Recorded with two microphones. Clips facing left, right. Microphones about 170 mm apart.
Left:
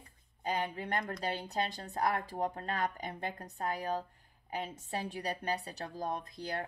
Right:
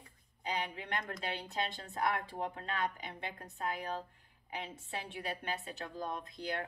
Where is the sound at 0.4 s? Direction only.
45° left (ahead or behind).